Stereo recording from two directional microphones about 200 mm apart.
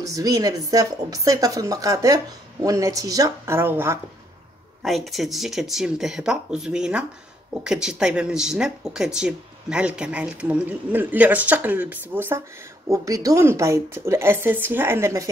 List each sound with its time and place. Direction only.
0.0 s a woman's voice: 15° right (ahead or behind)
4.8 s a woman's voice: centre (ahead or behind)